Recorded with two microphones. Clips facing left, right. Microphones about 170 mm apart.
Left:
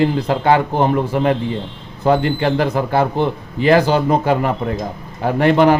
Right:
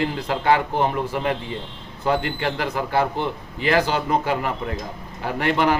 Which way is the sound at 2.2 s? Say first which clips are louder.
Left 8 dB; 40° left (ahead or behind).